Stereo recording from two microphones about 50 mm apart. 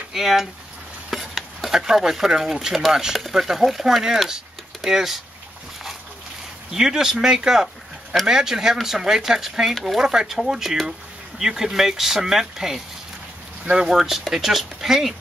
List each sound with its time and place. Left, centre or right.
0.1 s speech: centre
1.1 s stir: centre
1.8 s speech: centre
6.7 s speech: centre
9.8 s speech: centre
10.0 s speech: centre
13.9 s speech: centre